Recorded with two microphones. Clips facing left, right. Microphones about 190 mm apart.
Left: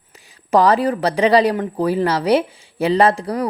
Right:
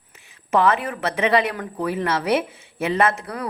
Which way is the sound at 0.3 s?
35° left (ahead or behind).